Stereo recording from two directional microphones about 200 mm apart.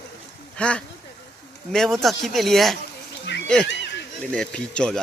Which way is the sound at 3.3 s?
60° left (ahead or behind).